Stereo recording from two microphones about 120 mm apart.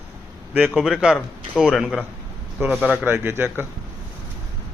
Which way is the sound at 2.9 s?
15° right (ahead or behind).